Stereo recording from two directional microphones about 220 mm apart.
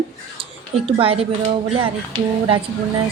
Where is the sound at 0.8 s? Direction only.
25° right (ahead or behind).